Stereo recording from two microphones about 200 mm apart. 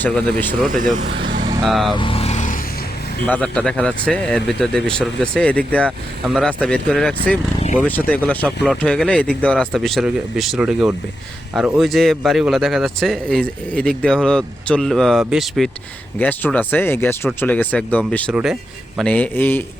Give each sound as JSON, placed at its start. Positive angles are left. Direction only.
{"t": 0.0, "sound": "speech", "side_deg": 5}
{"t": 1.0, "sound": "speech", "side_deg": -65}
{"t": 1.6, "sound": "speech", "side_deg": 0}
{"t": 2.0, "sound": "vehicle", "side_deg": 25}
{"t": 3.2, "sound": "speech", "side_deg": 5}